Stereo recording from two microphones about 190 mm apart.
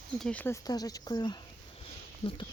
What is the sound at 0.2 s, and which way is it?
Speech, 5° left (ahead or behind).